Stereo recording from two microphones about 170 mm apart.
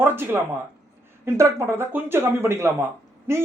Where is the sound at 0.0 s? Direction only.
15° right (ahead or behind).